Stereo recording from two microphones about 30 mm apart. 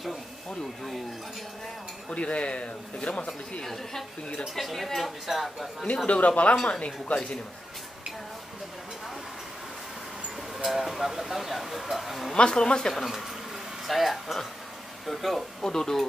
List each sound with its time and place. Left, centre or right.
2.1 s speech: left
3.6 s speech: centre
6.0 s speech: left
10.6 s speech: centre
12.4 s speech: left
12.9 s speech: centre
15.6 s speech: centre